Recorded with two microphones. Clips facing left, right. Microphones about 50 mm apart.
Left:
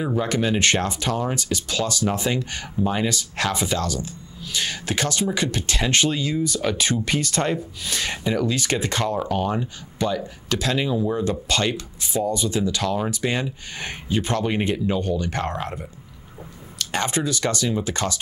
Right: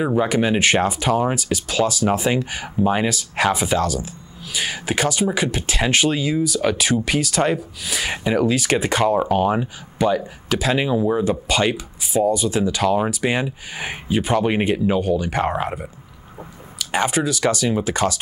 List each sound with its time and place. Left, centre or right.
0.0 s speech: centre
3.1 s speech: centre
8.2 s speech: centre